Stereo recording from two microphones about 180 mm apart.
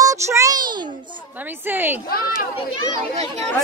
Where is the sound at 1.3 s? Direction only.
10° right (ahead or behind).